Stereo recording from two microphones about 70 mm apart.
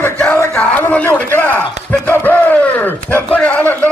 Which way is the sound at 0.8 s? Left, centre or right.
Left.